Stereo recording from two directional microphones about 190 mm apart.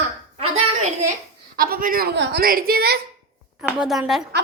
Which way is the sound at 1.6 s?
50° right (ahead or behind).